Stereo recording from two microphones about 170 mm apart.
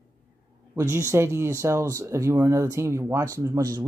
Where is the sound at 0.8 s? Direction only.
15° right (ahead or behind).